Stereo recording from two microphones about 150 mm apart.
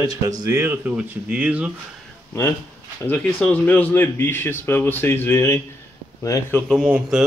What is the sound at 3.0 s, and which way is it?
Speech, 10° left (ahead or behind).